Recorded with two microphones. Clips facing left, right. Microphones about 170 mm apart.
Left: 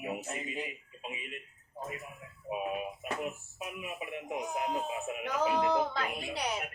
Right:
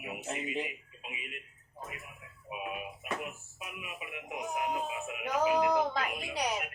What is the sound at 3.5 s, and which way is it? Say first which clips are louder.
Speech: left 5 dB; 35° left (ahead or behind).